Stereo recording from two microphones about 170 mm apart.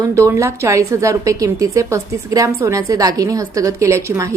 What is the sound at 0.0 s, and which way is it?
A woman's voice, 15° right (ahead or behind).